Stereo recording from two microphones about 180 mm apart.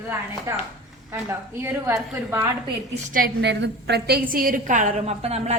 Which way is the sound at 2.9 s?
50° right (ahead or behind).